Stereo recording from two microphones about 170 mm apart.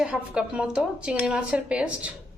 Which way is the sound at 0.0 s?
5° right (ahead or behind).